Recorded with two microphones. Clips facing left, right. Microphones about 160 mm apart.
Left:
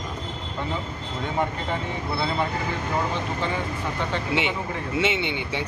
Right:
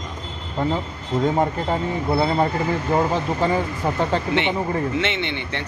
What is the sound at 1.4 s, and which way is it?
Speech, 40° right (ahead or behind).